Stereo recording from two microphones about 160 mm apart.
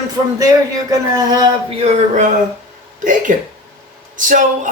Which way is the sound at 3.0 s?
55° right (ahead or behind).